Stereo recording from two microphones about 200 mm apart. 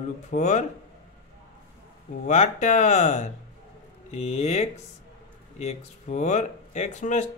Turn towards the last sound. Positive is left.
turn(degrees=35)  # may be behind; listen again after turning